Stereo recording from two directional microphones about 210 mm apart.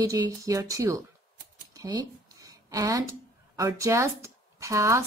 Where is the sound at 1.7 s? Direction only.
15° right (ahead or behind).